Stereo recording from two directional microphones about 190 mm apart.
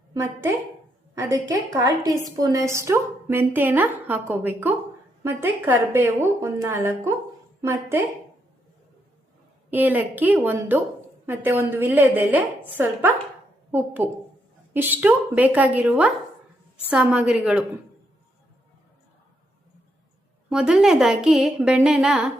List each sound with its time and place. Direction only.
0.1 s a woman's voice: 15° right (ahead or behind)
9.6 s a woman's voice: 10° right (ahead or behind)
20.5 s a woman's voice: 5° right (ahead or behind)